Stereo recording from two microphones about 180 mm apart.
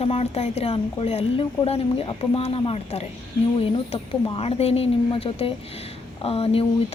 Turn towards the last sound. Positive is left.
turn(degrees=30)  # may be behind; listen again after turning